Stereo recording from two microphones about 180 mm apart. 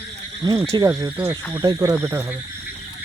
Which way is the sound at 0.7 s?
20° right (ahead or behind).